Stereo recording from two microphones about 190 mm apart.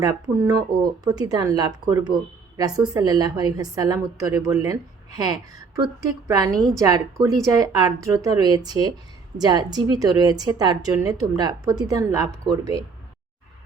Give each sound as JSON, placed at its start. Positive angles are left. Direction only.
{"t": 0.0, "sound": "a woman's voice", "side_deg": -20}